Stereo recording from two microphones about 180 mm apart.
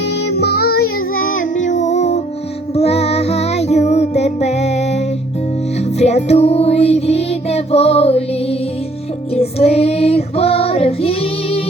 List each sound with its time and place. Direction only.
0.3 s music: 60° left (ahead or behind)
1.4 s music: 45° left (ahead or behind)
6.0 s music: 35° left (ahead or behind)
9.3 s child singing: 35° left (ahead or behind)